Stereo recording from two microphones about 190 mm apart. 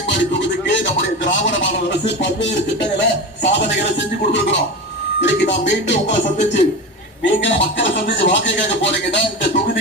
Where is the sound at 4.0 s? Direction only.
70° left (ahead or behind).